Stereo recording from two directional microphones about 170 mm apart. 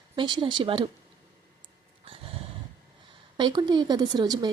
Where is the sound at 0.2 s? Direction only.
25° right (ahead or behind).